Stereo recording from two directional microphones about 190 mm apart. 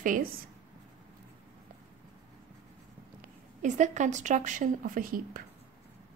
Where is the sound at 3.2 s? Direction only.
40° right (ahead or behind).